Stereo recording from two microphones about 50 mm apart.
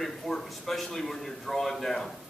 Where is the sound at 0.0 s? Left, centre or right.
Centre.